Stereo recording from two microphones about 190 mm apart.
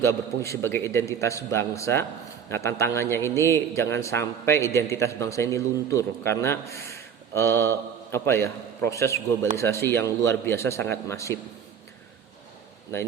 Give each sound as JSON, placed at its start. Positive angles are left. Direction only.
{"t": 0.0, "sound": "a man's voice", "side_deg": 15}